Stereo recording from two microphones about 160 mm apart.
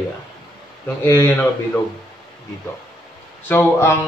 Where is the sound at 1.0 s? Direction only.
15° left (ahead or behind).